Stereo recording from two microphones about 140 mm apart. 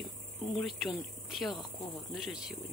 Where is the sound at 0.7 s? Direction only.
Centre (ahead or behind).